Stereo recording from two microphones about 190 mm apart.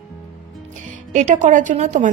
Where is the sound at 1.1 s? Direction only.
40° right (ahead or behind).